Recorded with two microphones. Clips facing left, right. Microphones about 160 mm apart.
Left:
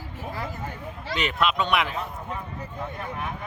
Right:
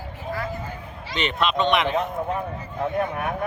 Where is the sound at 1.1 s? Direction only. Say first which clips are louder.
Right 2 dB; 5° left (ahead or behind).